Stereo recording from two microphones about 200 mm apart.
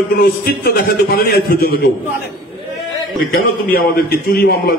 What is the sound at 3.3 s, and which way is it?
A man's voice, 50° left (ahead or behind).